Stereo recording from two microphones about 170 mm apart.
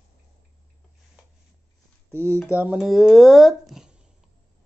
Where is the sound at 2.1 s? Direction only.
15° right (ahead or behind).